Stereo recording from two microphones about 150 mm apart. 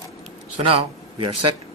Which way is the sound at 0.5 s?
35° right (ahead or behind).